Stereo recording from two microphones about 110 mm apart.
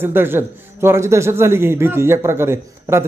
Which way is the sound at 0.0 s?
20° right (ahead or behind).